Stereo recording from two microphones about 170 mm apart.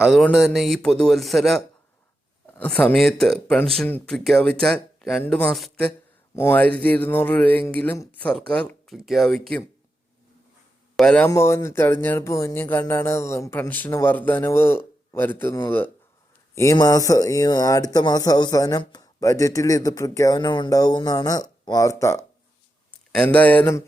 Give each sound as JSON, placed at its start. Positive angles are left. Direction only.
{"t": 0.0, "sound": "a man's voice", "side_deg": 0}
{"t": 6.3, "sound": "a man's voice", "side_deg": 15}
{"t": 10.9, "sound": "speech", "side_deg": 5}
{"t": 11.3, "sound": "speech", "side_deg": 15}
{"t": 16.6, "sound": "speech", "side_deg": 20}